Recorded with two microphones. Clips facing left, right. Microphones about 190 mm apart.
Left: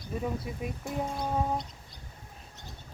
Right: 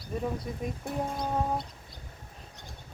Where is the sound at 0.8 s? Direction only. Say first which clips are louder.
Even; 60° right (ahead or behind).